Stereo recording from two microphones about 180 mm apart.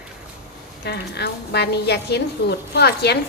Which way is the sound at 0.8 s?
65° left (ahead or behind).